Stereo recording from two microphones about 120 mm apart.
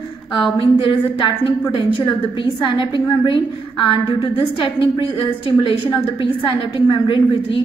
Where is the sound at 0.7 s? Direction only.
45° left (ahead or behind).